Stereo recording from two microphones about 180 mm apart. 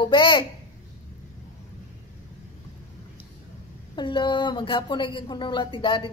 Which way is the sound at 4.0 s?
25° left (ahead or behind).